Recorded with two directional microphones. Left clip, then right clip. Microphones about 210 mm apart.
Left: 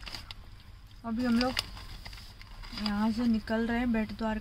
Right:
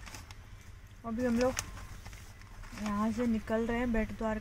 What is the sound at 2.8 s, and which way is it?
Speech, 10° left (ahead or behind).